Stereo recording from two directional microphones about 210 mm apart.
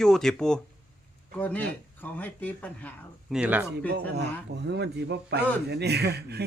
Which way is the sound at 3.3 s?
5° right (ahead or behind).